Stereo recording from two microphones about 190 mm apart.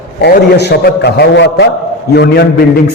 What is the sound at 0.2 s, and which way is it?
A man's voice, 60° left (ahead or behind).